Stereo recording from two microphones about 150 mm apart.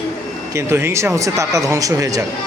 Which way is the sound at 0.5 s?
15° right (ahead or behind).